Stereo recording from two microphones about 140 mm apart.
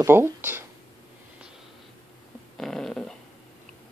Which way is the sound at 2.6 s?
5° left (ahead or behind).